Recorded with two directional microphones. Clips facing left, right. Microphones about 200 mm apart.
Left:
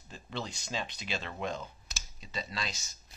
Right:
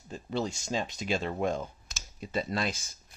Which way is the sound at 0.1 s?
45° right (ahead or behind).